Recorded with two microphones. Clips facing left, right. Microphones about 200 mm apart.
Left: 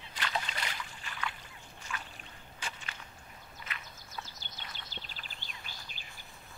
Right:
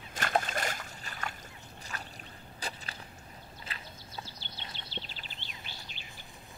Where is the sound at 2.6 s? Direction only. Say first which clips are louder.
Right 3 dB; 35° right (ahead or behind).